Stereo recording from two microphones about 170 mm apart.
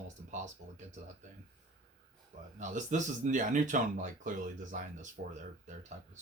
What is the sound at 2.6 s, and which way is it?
Speech, 45° right (ahead or behind).